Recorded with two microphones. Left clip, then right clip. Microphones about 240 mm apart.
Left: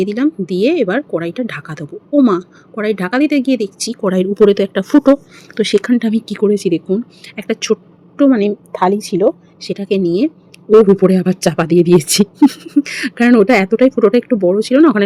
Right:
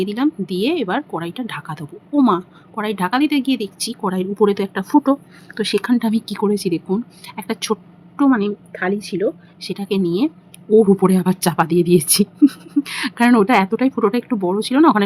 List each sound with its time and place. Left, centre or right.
0.0 s speech: centre
8.7 s speech: left
9.6 s speech: centre